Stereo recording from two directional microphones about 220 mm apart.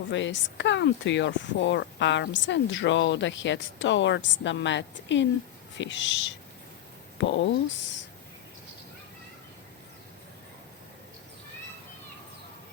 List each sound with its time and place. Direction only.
0.1 s speech: 55° left (ahead or behind)
7.2 s speech: 55° left (ahead or behind)